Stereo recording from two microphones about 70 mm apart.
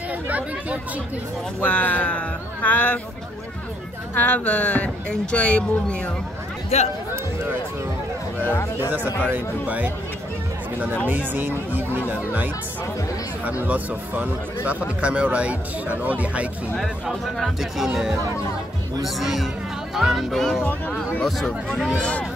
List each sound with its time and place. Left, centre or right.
0.3 s speech: right
1.6 s speech: left
4.1 s speech: left
8.5 s speech: left
9.3 s speech: right
11.1 s speech: right
13.5 s speech: right
16.7 s speech: centre